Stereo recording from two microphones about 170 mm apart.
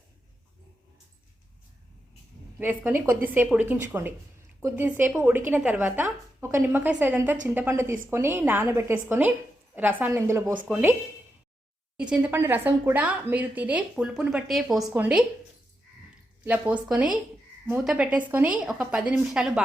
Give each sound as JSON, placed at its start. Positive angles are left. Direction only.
{"t": 2.6, "sound": "a woman's voice", "side_deg": -10}
{"t": 11.9, "sound": "a woman's voice", "side_deg": -5}
{"t": 16.4, "sound": "a woman's voice", "side_deg": -10}